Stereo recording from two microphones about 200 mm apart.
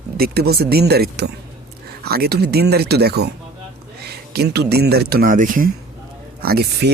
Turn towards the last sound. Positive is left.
turn(degrees=-55)  # may be behind; listen again after turning